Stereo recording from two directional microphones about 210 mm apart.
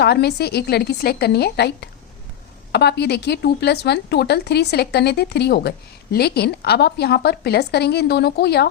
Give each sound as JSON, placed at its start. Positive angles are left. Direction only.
{"t": 0.0, "sound": "a woman's voice", "side_deg": 50}